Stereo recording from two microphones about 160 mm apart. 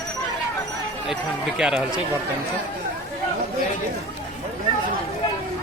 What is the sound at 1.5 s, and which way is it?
Speech, 5° right (ahead or behind).